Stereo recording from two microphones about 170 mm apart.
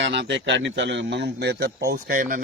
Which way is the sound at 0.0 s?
90° right.